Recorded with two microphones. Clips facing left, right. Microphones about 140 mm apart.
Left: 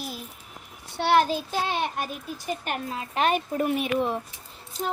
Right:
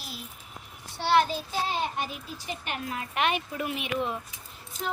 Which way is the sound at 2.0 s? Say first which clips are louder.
Left 2 dB; 45° left (ahead or behind).